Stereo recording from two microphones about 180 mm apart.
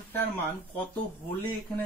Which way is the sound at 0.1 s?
10° left (ahead or behind).